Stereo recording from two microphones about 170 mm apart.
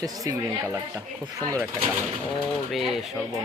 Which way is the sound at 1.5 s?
15° right (ahead or behind).